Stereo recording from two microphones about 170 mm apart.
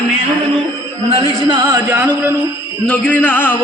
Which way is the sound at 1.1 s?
30° right (ahead or behind).